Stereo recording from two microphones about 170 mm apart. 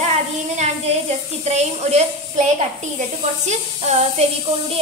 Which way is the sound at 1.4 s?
40° right (ahead or behind).